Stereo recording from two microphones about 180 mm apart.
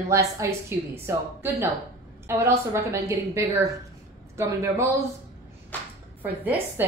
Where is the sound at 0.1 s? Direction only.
15° right (ahead or behind).